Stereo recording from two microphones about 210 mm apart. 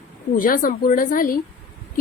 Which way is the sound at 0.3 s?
40° left (ahead or behind).